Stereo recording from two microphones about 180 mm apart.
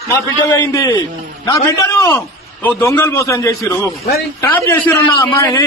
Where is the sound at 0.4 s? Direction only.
15° left (ahead or behind).